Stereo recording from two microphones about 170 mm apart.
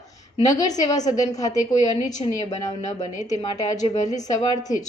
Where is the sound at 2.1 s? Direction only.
45° left (ahead or behind).